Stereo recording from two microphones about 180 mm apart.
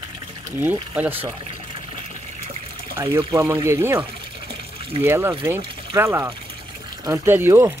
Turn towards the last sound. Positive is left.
turn(degrees=-10)  # may be behind; listen again after turning